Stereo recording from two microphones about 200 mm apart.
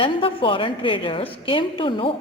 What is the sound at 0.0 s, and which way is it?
Speech, 25° left (ahead or behind).